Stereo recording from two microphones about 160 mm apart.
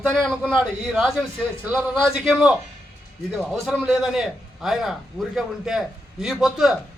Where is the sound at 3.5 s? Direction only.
Centre (ahead or behind).